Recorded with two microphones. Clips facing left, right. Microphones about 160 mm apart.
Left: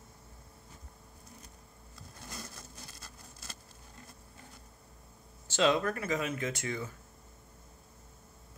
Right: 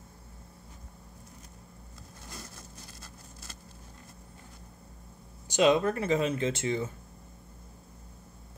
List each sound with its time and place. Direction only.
5.5 s speech: 20° right (ahead or behind)